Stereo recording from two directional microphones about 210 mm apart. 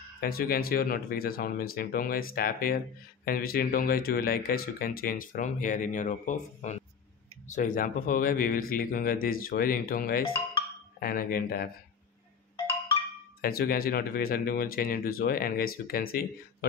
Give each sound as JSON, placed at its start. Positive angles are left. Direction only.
{"t": 0.2, "sound": "speech", "side_deg": 45}
{"t": 13.4, "sound": "speech", "side_deg": 45}